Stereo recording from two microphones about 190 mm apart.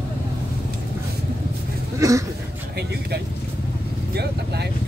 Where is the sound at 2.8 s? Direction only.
60° right (ahead or behind).